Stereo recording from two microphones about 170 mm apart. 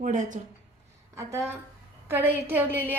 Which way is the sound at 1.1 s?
15° right (ahead or behind).